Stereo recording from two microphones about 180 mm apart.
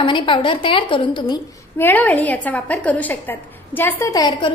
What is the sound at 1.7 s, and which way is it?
A woman's voice, 10° left (ahead or behind).